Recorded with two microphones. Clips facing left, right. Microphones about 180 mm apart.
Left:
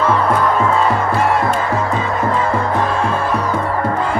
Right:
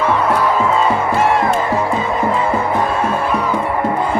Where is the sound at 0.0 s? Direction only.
Centre (ahead or behind).